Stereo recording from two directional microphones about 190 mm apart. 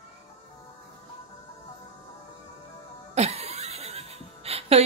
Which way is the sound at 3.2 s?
35° right (ahead or behind).